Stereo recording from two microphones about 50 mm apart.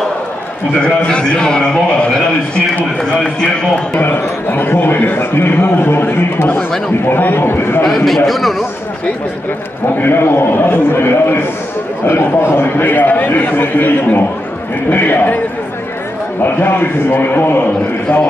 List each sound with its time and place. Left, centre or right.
1.0 s a man's voice: centre
3.9 s a man's voice: left
7.8 s a man's voice: centre
9.9 s a man's voice: left
12.1 s a man's voice: left
12.5 s a man's voice: left
16.3 s a man's voice: left